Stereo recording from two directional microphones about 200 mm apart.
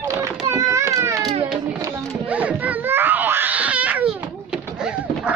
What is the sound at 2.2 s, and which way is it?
Baby cry, 5° right (ahead or behind).